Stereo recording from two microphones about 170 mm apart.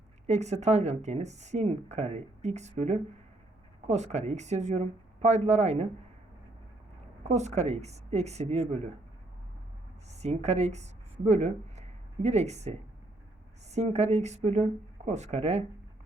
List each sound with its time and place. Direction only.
0.3 s speech: 40° right (ahead or behind)
7.3 s speech: 40° right (ahead or behind)
10.1 s a woman's voice: 40° right (ahead or behind)
13.7 s speech: 40° right (ahead or behind)